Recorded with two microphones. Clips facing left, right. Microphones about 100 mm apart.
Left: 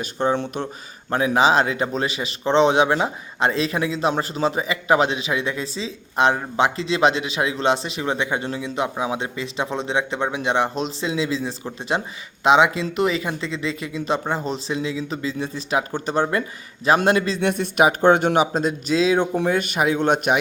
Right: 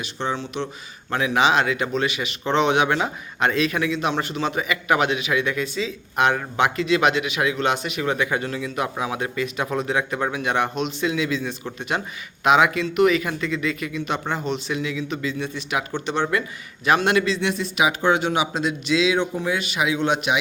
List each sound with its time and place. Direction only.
0.0 s speech: 45° left (ahead or behind)
1.1 s speech: 35° left (ahead or behind)